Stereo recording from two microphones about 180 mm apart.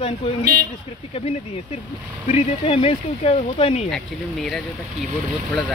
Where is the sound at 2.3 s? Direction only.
35° left (ahead or behind).